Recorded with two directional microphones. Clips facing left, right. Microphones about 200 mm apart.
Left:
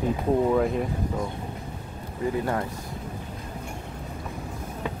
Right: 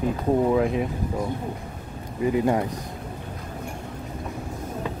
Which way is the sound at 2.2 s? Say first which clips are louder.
Right 5 dB; 20° right (ahead or behind).